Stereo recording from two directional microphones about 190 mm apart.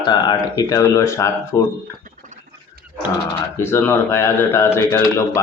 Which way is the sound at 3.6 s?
15° left (ahead or behind).